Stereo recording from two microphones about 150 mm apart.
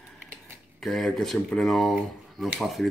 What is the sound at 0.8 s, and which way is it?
Speech, centre (ahead or behind).